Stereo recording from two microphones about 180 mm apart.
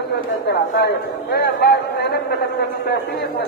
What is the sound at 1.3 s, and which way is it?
Speech, 65° left (ahead or behind).